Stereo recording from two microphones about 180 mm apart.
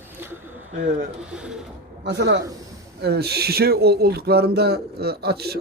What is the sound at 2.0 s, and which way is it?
A man's voice, 70° right (ahead or behind).